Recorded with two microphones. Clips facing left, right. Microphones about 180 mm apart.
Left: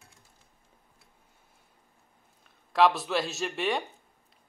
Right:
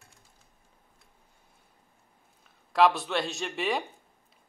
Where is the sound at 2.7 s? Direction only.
Centre (ahead or behind).